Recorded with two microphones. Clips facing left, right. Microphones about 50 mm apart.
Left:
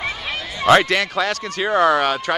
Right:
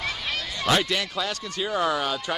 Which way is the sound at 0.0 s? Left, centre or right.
Left.